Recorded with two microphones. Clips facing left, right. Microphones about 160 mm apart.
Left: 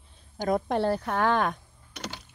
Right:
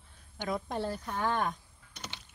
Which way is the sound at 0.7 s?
70° left (ahead or behind).